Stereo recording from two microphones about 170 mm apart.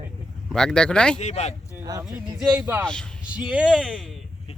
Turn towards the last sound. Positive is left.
turn(degrees=0)  # may be behind; listen again after turning